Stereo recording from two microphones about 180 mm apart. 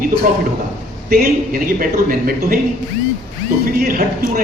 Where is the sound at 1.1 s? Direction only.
55° right (ahead or behind).